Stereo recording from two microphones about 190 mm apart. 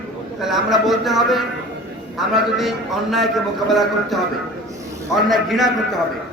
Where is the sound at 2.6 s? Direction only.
Centre (ahead or behind).